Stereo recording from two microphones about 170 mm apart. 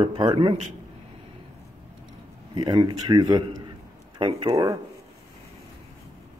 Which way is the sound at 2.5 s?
25° right (ahead or behind).